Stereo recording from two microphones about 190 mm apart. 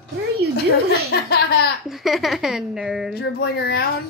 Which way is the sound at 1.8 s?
Centre (ahead or behind).